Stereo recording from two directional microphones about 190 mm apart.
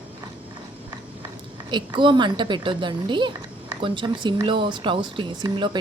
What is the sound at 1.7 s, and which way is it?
Speech, 25° right (ahead or behind).